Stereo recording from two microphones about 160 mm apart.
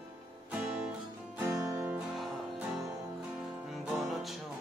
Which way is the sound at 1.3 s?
15° right (ahead or behind).